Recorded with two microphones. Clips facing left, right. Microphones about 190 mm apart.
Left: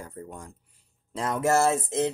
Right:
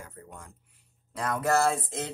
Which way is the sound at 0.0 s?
35° left (ahead or behind).